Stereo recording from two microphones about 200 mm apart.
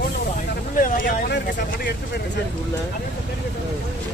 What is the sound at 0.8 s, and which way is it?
Speech, 45° left (ahead or behind).